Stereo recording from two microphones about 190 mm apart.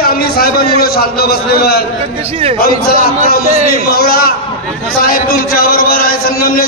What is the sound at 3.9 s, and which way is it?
A man's voice, 55° left (ahead or behind).